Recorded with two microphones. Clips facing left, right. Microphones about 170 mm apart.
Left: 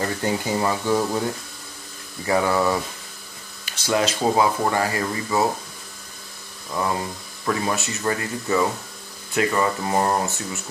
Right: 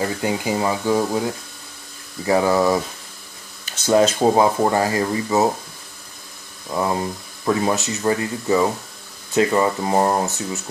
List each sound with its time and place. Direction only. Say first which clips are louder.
0.0 s speech: right 2 dB; 10° right (ahead or behind)
2.2 s speech: right 3 dB; 15° right (ahead or behind)
3.8 s speech: right 6 dB; 50° right (ahead or behind)
4.2 s speech: right 4 dB; 25° right (ahead or behind)
6.7 s speech: right 3 dB; 20° right (ahead or behind)